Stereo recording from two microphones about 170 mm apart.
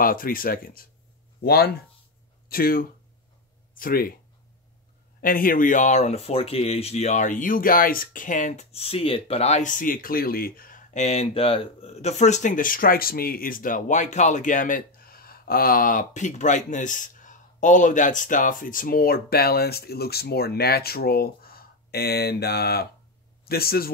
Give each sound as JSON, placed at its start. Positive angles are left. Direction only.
{"t": 0.0, "sound": "speech", "side_deg": 60}
{"t": 5.2, "sound": "speech", "side_deg": 55}